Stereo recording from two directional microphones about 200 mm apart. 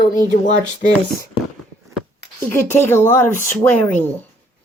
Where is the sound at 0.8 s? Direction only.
45° left (ahead or behind).